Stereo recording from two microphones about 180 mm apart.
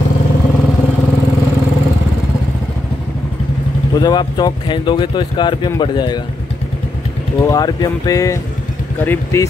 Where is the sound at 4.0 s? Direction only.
25° left (ahead or behind).